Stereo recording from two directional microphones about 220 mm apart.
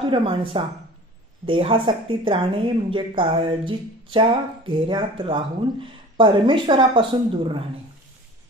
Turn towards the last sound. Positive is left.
turn(degrees=-20)  # may be behind; listen again after turning